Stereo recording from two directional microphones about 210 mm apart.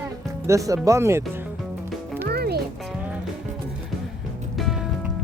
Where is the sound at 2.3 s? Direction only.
50° right (ahead or behind).